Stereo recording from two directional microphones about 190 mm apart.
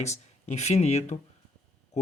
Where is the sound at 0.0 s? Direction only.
35° left (ahead or behind).